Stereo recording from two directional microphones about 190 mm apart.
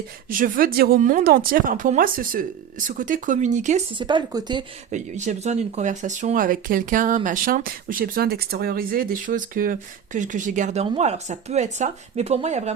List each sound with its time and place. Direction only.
0.3 s speech: 45° right (ahead or behind)
3.9 s speech: 25° right (ahead or behind)
4.9 s speech: 40° right (ahead or behind)